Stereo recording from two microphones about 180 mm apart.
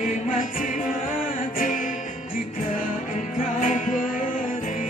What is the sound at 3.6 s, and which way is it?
Music, 45° left (ahead or behind).